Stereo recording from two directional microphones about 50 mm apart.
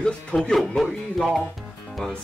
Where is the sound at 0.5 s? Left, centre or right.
Centre.